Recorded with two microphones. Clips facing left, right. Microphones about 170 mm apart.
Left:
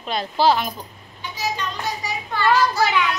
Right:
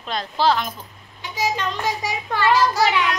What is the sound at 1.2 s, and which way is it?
Child singing, 90° right.